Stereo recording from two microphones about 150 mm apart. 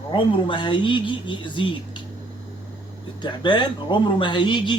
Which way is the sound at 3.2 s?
30° left (ahead or behind).